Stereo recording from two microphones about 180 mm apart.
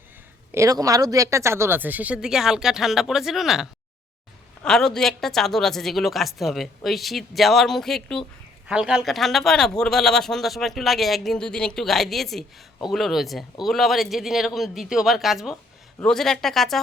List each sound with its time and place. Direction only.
0.5 s a man's voice: 20° right (ahead or behind); by 16.8 s centre (ahead or behind)